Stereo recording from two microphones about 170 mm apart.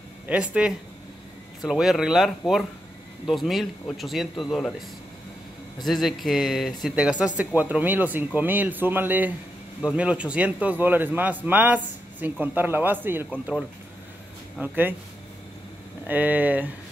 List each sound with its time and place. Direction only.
0.3 s a man's voice: 5° right (ahead or behind)
5.9 s a man's voice: centre (ahead or behind)
13.5 s speech: centre (ahead or behind)
14.6 s a man's voice: 10° right (ahead or behind)
16.1 s a man's voice: 10° right (ahead or behind)